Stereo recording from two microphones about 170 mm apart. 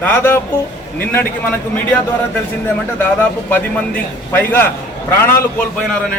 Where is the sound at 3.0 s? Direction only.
10° left (ahead or behind).